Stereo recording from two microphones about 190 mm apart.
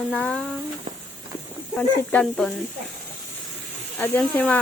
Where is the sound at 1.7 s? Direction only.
5° left (ahead or behind).